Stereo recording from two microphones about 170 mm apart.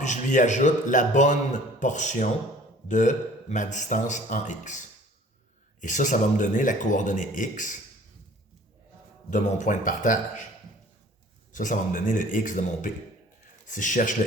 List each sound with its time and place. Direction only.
0.0 s a man's voice: 45° left (ahead or behind)
9.3 s a man's voice: 50° left (ahead or behind)
11.5 s a man's voice: 50° left (ahead or behind)